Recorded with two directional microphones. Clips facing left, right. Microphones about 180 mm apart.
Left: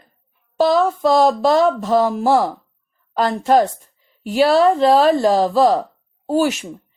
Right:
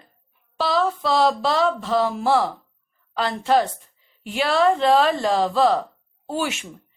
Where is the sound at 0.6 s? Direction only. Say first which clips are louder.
Left 7 dB; 45° left (ahead or behind).